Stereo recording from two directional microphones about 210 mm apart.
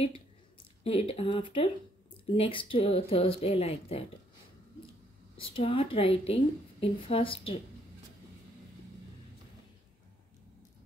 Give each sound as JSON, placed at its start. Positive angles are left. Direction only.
{"t": 0.8, "sound": "a woman's voice", "side_deg": 25}
{"t": 5.4, "sound": "a woman's voice", "side_deg": 25}